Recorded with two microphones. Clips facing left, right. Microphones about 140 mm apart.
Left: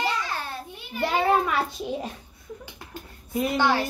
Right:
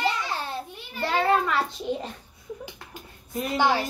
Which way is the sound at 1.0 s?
15° left (ahead or behind).